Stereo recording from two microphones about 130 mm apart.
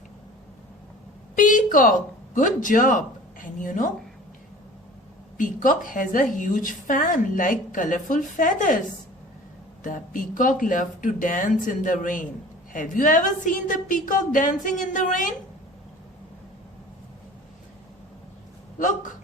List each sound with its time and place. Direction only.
1.4 s a woman's voice: 85° left
5.4 s a woman's voice: 90° left
9.8 s a woman's voice: 90° left